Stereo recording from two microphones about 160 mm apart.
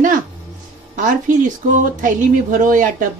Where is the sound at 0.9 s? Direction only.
55° right (ahead or behind).